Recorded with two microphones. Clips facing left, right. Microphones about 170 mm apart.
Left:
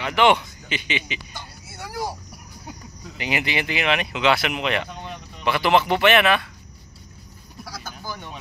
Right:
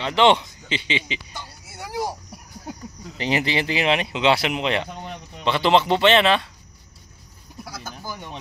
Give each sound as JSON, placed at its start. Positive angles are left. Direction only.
{"t": 0.0, "sound": "speech", "side_deg": -25}
{"t": 1.8, "sound": "a sound", "side_deg": -15}
{"t": 3.2, "sound": "speech", "side_deg": -30}